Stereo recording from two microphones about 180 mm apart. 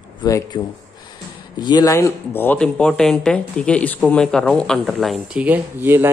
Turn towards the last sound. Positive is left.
turn(degrees=-10)  # may be behind; listen again after turning